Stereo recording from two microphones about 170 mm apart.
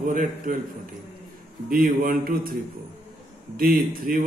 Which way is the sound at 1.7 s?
60° right (ahead or behind).